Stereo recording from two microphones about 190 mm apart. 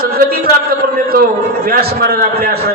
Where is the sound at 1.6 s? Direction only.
55° right (ahead or behind).